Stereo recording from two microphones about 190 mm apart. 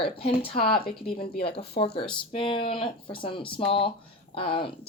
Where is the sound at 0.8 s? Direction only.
55° left (ahead or behind).